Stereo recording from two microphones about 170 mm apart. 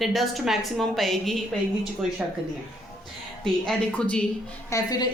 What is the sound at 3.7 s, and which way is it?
Speech, 5° left (ahead or behind).